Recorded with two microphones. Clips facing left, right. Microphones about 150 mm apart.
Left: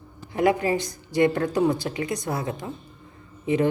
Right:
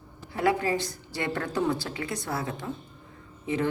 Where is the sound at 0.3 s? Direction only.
15° left (ahead or behind).